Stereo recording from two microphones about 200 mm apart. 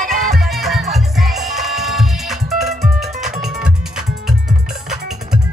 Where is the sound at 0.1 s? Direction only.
Centre (ahead or behind).